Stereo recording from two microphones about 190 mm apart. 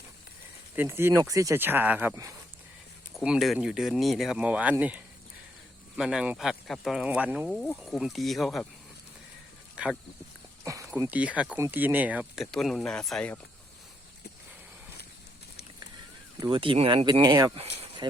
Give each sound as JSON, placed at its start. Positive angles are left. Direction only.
{"t": 0.8, "sound": "speech", "side_deg": -10}
{"t": 3.2, "sound": "speech", "side_deg": 0}
{"t": 9.7, "sound": "speech", "side_deg": -5}
{"t": 10.6, "sound": "speech", "side_deg": -15}
{"t": 16.4, "sound": "speech", "side_deg": -25}
{"t": 17.6, "sound": "a sound", "side_deg": -25}